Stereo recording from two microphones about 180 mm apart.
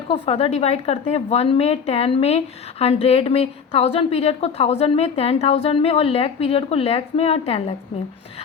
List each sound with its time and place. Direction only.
0.1 s a woman's voice: 35° left (ahead or behind)